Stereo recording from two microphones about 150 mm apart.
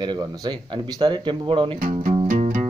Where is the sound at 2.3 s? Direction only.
60° right (ahead or behind).